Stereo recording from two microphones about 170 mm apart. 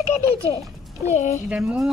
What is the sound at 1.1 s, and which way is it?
Speech, 45° left (ahead or behind).